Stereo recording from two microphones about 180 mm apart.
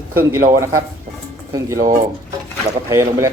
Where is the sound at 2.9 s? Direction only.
15° right (ahead or behind).